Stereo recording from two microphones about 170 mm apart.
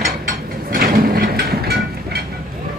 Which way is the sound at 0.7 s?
60° right (ahead or behind).